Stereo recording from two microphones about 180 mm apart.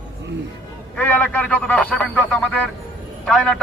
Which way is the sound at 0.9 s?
10° left (ahead or behind).